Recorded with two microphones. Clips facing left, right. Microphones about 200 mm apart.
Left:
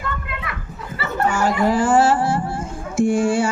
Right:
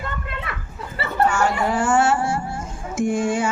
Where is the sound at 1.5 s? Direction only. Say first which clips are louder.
Left 3 dB; 35° left (ahead or behind).